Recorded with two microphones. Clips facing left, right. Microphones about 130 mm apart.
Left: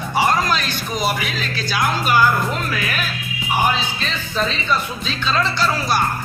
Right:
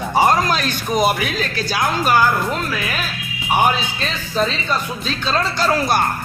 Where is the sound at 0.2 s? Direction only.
40° right (ahead or behind).